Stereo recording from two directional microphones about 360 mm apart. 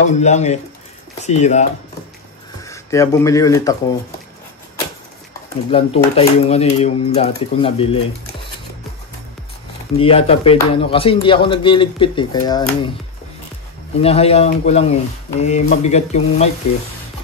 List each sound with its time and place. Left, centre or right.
0.0 s speech: centre
2.6 s speech: centre
5.7 s speech: centre
9.9 s speech: centre
14.0 s speech: centre